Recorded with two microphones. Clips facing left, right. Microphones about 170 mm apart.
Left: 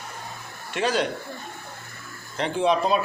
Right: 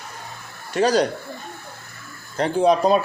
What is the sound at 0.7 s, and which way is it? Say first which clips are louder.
Speech: right 6 dB; 40° right (ahead or behind).